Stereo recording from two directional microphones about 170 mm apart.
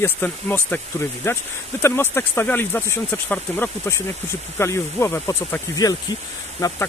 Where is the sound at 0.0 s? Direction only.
10° left (ahead or behind).